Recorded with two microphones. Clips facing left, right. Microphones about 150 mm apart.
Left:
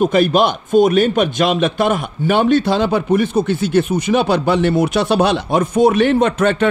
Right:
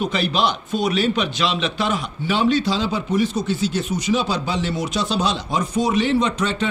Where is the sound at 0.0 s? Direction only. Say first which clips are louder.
Left 8 dB; 50° left (ahead or behind).